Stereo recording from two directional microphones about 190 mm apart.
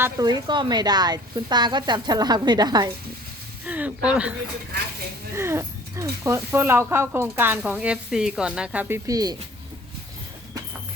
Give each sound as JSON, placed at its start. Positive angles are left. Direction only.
{"t": 0.0, "sound": "a woman's voice", "side_deg": -20}
{"t": 3.7, "sound": "speech", "side_deg": -5}